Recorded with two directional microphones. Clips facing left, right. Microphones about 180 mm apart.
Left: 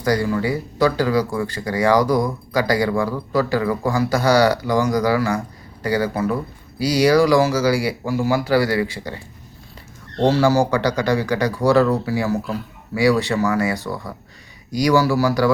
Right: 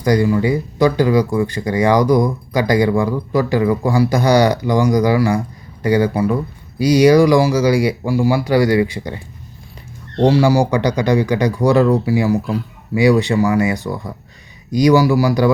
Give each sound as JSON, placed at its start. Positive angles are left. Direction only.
{"t": 0.0, "sound": "speech", "side_deg": -20}
{"t": 10.2, "sound": "speech", "side_deg": -15}